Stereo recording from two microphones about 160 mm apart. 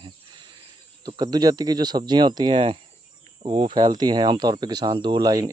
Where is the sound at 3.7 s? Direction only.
25° right (ahead or behind).